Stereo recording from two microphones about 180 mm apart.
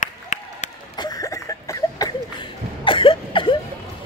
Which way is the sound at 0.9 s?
20° left (ahead or behind).